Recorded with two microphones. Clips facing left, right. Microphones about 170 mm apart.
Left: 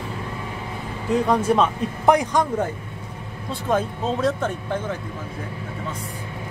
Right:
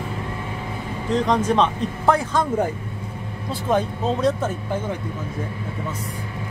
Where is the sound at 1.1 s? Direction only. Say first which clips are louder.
Left 1 dB; 10° left (ahead or behind).